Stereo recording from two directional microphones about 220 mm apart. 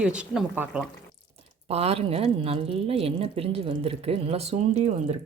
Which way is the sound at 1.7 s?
25° right (ahead or behind).